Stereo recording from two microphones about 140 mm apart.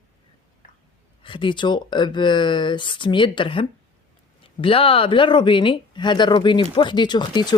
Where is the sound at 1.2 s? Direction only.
35° left (ahead or behind).